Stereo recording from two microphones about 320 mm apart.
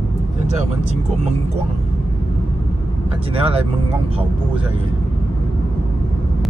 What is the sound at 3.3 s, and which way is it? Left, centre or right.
Speech, centre.